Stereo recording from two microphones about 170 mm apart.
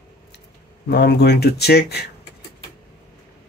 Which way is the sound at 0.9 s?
75° left (ahead or behind).